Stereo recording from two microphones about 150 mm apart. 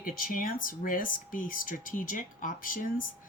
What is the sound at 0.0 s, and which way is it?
Speech, 70° left (ahead or behind).